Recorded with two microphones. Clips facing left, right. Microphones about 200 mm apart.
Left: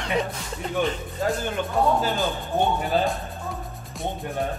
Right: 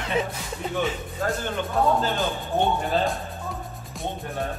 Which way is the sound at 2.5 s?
Centre (ahead or behind).